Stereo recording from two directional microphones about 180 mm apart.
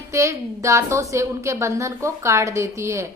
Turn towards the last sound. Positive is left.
turn(degrees=-15)  # may be behind; listen again after turning